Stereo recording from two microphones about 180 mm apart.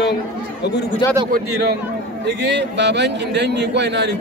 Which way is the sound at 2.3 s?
75° right (ahead or behind).